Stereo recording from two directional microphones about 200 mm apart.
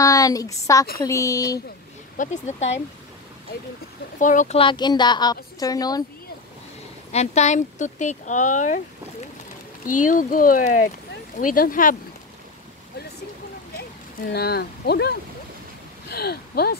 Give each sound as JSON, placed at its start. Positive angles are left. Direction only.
{"t": 0.0, "sound": "a woman's voice", "side_deg": 15}
{"t": 2.1, "sound": "speech", "side_deg": 35}
{"t": 4.2, "sound": "speech", "side_deg": 40}
{"t": 4.6, "sound": "a woman's voice", "side_deg": 25}
{"t": 7.1, "sound": "speech", "side_deg": 35}
{"t": 9.8, "sound": "speech", "side_deg": 40}
{"t": 13.7, "sound": "speech", "side_deg": 50}